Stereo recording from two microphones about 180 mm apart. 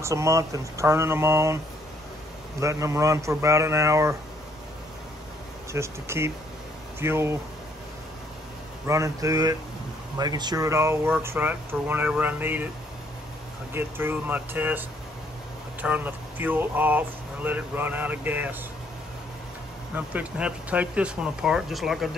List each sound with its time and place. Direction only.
0.0 s speech: 15° right (ahead or behind)
2.6 s speech: 15° right (ahead or behind)
5.7 s speech: 15° right (ahead or behind)
8.8 s speech: 15° right (ahead or behind)
13.7 s speech: 10° right (ahead or behind)
20.1 s speech: 5° right (ahead or behind)